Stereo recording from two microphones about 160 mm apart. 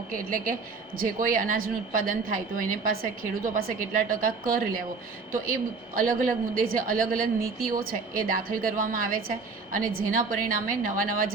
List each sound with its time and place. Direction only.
0.1 s a woman's voice: 60° right (ahead or behind)